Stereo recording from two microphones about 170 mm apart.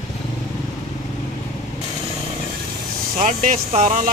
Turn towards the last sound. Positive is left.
turn(degrees=-50)  # may be behind; listen again after turning